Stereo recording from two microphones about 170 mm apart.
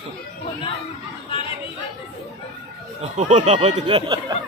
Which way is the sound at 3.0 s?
45° right (ahead or behind).